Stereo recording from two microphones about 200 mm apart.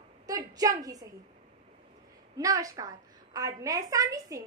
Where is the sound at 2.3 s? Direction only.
15° right (ahead or behind).